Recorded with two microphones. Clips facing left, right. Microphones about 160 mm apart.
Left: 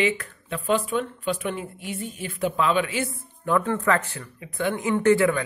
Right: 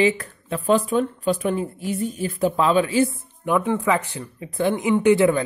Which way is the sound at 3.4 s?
15° right (ahead or behind).